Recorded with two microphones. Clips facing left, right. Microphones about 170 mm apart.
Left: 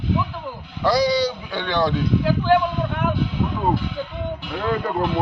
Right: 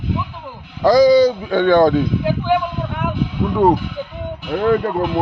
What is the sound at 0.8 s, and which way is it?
A man's voice, 45° right (ahead or behind).